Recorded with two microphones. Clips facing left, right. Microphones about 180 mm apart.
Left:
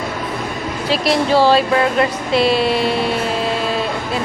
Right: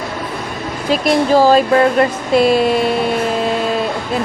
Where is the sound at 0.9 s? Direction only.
45° right (ahead or behind).